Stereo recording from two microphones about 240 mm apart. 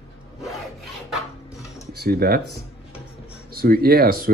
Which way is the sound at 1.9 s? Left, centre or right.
Right.